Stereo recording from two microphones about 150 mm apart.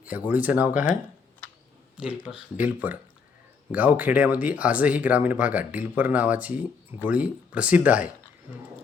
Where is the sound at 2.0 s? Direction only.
5° right (ahead or behind).